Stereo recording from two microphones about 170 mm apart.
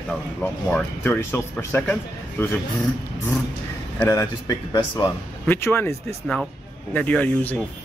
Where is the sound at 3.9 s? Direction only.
15° left (ahead or behind).